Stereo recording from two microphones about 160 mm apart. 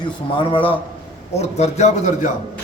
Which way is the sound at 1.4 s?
45° left (ahead or behind).